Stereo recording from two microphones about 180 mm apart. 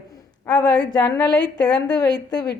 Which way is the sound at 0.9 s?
20° left (ahead or behind).